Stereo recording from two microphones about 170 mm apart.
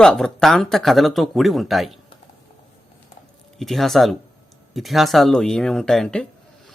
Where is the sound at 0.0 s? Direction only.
5° left (ahead or behind).